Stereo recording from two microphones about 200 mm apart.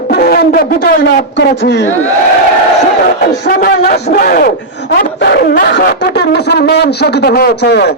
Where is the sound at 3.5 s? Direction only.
45° left (ahead or behind).